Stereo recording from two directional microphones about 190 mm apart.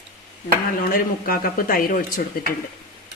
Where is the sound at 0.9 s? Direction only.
50° left (ahead or behind).